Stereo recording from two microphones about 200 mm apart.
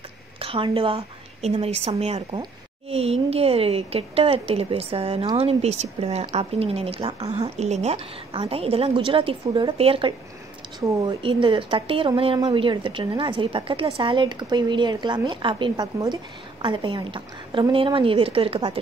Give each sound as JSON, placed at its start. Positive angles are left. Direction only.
{"t": 0.4, "sound": "a woman's voice", "side_deg": -30}
{"t": 10.8, "sound": "a woman's voice", "side_deg": -15}